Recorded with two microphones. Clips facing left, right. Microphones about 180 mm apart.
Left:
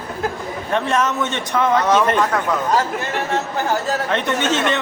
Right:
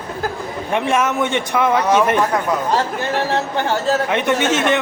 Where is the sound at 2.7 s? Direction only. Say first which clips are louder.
Right 1 dB; 30° right (ahead or behind).